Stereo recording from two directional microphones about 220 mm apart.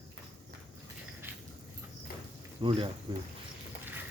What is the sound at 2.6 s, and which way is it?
Speech, 20° right (ahead or behind).